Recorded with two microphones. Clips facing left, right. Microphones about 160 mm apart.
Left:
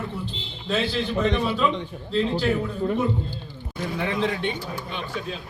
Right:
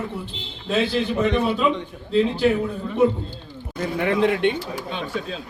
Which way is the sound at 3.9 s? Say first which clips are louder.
Right 6 dB; 55° right (ahead or behind).